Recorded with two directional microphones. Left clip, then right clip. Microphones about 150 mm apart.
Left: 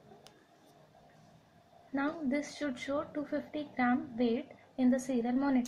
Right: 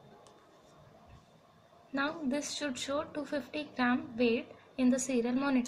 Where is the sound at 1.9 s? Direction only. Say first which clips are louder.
Even; 10° left (ahead or behind).